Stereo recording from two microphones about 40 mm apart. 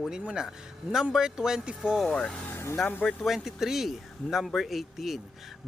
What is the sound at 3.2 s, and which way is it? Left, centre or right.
Speech, centre.